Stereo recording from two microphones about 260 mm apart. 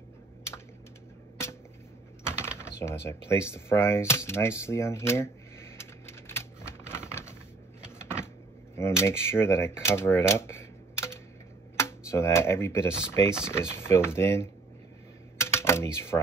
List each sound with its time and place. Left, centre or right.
2.2 s typing: centre
8.0 s a sound: centre
8.7 s speech: centre
15.3 s typing: centre